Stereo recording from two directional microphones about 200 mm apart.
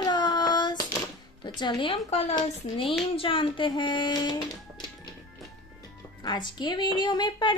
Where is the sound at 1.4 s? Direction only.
25° left (ahead or behind).